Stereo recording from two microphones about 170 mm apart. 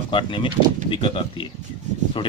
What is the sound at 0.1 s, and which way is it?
Speech, 30° left (ahead or behind).